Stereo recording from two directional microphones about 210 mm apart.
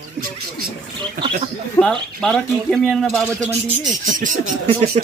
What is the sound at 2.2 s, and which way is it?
Speech, 5° left (ahead or behind).